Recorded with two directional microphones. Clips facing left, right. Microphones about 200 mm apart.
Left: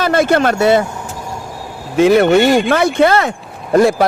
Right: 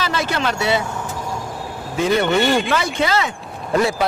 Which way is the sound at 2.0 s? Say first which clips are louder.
Left 9 dB; 70° left (ahead or behind).